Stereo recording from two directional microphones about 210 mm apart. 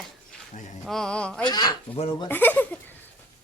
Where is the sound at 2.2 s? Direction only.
10° left (ahead or behind).